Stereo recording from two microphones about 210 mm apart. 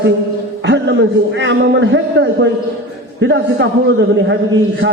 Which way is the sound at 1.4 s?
60° right (ahead or behind).